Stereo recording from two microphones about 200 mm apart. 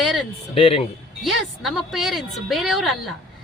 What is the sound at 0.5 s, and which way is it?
Speech, 30° left (ahead or behind).